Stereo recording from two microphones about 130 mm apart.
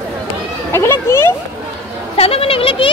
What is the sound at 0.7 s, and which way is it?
Speech, 20° left (ahead or behind).